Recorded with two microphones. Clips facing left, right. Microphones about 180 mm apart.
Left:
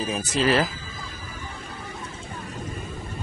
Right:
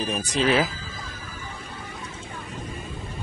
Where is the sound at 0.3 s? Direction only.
Centre (ahead or behind).